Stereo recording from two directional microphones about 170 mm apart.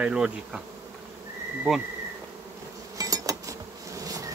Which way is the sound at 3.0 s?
20° right (ahead or behind).